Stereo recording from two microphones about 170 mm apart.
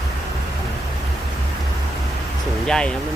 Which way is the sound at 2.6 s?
5° left (ahead or behind).